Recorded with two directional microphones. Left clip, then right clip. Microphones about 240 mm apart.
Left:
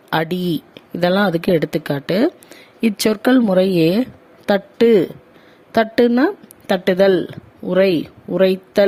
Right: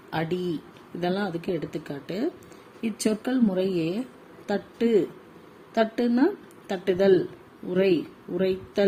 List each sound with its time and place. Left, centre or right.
0.1 s speech: left